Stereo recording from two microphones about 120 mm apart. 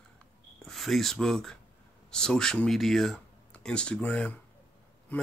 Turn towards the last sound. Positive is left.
turn(degrees=10)  # may be behind; listen again after turning